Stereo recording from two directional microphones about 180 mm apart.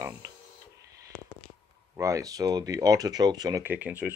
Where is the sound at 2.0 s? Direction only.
20° right (ahead or behind).